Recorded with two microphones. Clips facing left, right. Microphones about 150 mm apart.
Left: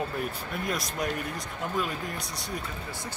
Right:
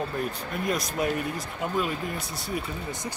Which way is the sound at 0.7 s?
Centre (ahead or behind).